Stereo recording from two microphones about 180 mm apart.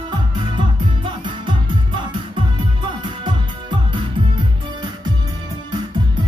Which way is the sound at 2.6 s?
25° right (ahead or behind).